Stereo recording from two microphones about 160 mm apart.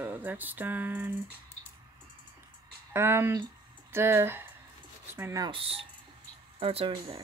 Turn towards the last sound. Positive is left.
turn(degrees=-35)  # may be behind; listen again after turning